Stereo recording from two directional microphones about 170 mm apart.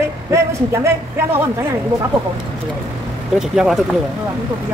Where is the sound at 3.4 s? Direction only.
Centre (ahead or behind).